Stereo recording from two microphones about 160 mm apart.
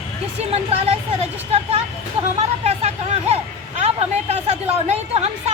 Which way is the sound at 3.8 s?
40° right (ahead or behind).